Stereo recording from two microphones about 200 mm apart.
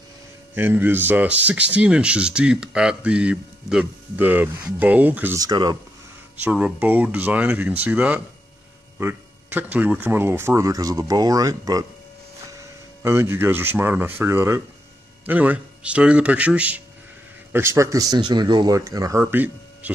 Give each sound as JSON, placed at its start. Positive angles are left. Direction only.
{"t": 0.6, "sound": "speech", "side_deg": -10}
{"t": 6.4, "sound": "speech", "side_deg": -10}